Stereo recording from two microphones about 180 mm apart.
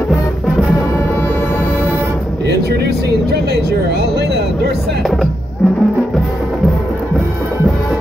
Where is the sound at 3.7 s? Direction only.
65° right (ahead or behind).